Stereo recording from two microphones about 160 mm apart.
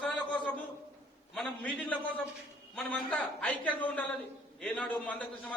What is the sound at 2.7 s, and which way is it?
A man's voice, 10° left (ahead or behind).